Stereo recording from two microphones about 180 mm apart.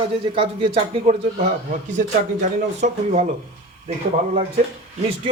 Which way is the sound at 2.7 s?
40° right (ahead or behind).